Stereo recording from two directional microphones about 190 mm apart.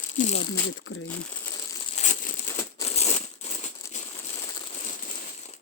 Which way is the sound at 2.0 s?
40° left (ahead or behind).